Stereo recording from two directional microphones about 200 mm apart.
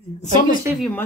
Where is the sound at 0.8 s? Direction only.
10° left (ahead or behind).